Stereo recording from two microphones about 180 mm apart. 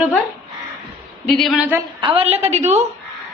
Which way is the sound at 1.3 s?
Centre (ahead or behind).